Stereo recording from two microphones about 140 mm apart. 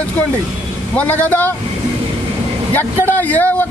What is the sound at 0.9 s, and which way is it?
Speech, 10° left (ahead or behind).